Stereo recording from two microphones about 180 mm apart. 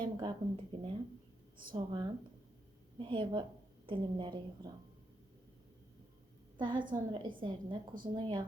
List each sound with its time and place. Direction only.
0.0 s speech: 25° right (ahead or behind)
6.6 s speech: 25° right (ahead or behind)